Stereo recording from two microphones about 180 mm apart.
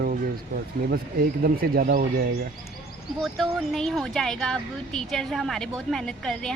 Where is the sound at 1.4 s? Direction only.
55° right (ahead or behind).